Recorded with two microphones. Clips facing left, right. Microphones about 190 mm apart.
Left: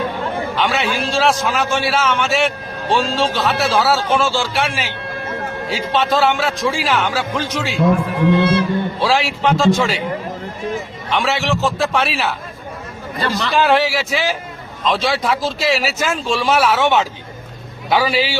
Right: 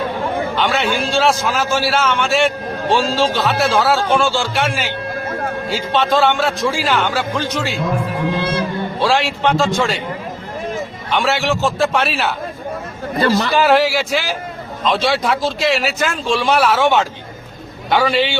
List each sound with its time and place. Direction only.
0.5 s speech: centre (ahead or behind)
9.0 s speech: centre (ahead or behind)
11.1 s speech: centre (ahead or behind)
13.1 s a man's voice: 45° right (ahead or behind)
13.6 s speech: centre (ahead or behind)